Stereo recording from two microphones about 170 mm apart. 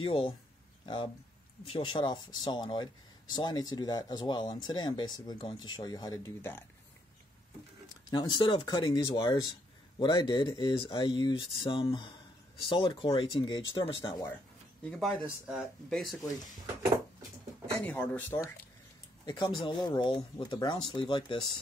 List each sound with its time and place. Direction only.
0.0 s speech: 30° left (ahead or behind)
8.1 s speech: 25° left (ahead or behind)
15.2 s speech: 5° right (ahead or behind)
17.7 s speech: 10° left (ahead or behind)
19.2 s speech: 25° left (ahead or behind)